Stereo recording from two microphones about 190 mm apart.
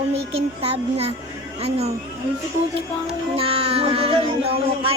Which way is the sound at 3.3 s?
30° right (ahead or behind).